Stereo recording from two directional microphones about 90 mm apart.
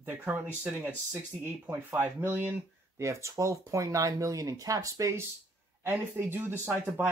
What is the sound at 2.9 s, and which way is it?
Speech, 35° right (ahead or behind).